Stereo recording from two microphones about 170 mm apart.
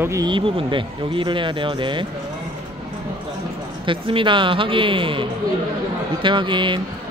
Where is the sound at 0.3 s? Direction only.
30° right (ahead or behind).